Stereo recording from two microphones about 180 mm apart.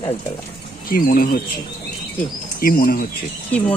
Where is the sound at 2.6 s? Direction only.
55° left (ahead or behind).